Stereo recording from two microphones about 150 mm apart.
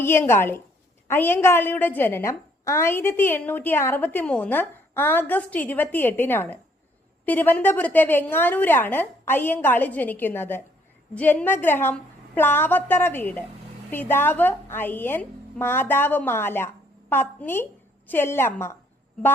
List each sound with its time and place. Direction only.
0.0 s a woman's voice: 15° left (ahead or behind)